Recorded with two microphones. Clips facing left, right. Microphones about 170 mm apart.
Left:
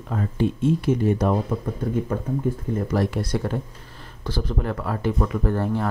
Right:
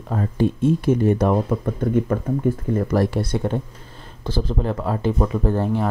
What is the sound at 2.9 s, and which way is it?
Speech, 30° right (ahead or behind).